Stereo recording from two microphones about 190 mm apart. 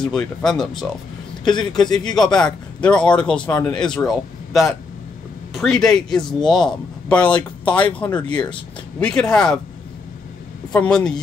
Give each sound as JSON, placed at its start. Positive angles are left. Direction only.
{"t": 0.1, "sound": "speech", "side_deg": 5}
{"t": 1.7, "sound": "speech", "side_deg": 20}
{"t": 2.3, "sound": "speech", "side_deg": 5}
{"t": 10.7, "sound": "speech", "side_deg": 5}